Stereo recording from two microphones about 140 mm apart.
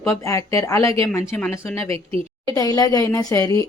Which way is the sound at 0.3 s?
25° left (ahead or behind).